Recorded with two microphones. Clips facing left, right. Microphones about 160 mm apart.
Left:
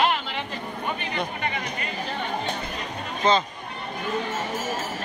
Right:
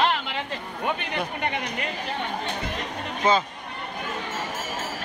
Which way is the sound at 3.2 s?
10° right (ahead or behind).